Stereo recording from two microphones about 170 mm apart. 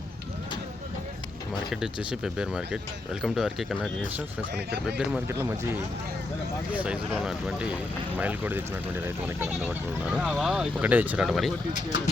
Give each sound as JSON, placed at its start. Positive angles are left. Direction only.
{"t": 1.7, "sound": "speech", "side_deg": -5}
{"t": 4.5, "sound": "speech", "side_deg": -75}
{"t": 5.3, "sound": "speech", "side_deg": -15}
{"t": 9.6, "sound": "speech", "side_deg": -5}